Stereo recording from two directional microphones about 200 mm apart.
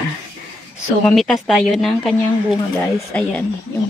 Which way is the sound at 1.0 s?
Centre (ahead or behind).